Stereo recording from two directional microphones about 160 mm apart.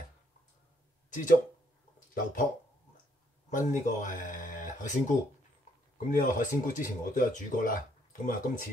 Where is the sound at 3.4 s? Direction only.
50° left (ahead or behind).